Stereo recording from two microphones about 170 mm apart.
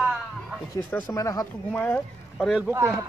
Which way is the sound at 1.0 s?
20° left (ahead or behind).